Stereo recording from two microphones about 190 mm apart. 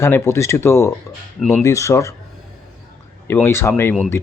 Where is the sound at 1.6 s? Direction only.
15° left (ahead or behind).